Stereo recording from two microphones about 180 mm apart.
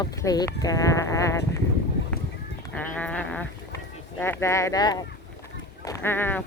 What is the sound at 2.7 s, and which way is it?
Sheep, 10° left (ahead or behind).